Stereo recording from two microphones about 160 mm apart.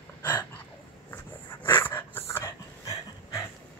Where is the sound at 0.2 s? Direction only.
15° left (ahead or behind).